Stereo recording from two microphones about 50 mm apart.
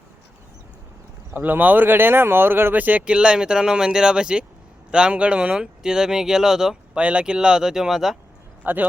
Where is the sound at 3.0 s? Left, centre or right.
Centre.